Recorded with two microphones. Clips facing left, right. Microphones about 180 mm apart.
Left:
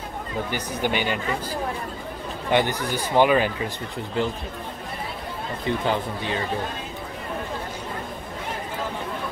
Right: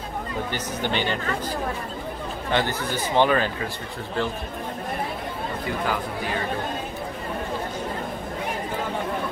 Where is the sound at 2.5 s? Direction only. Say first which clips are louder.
Left 3 dB; 15° left (ahead or behind).